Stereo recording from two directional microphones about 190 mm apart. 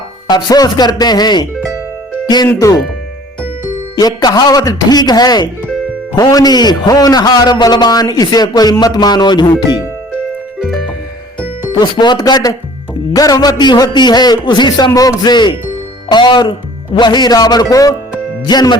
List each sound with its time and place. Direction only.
0.3 s a man's voice: 20° left (ahead or behind)
3.9 s a man's voice: 20° left (ahead or behind)
11.8 s a man's voice: 25° left (ahead or behind)